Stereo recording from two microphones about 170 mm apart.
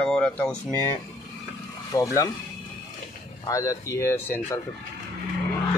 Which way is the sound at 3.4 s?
20° left (ahead or behind).